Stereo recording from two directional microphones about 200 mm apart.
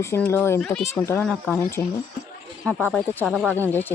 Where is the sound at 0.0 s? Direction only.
15° left (ahead or behind).